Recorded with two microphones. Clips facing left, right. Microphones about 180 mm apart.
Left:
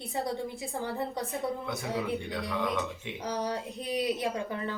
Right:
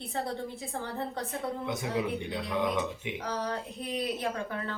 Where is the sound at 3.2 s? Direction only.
20° left (ahead or behind).